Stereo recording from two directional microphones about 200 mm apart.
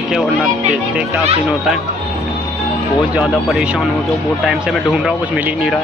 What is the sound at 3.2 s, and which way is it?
Speech, centre (ahead or behind).